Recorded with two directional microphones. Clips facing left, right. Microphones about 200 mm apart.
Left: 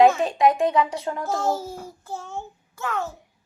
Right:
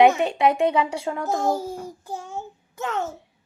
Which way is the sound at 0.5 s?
25° right (ahead or behind).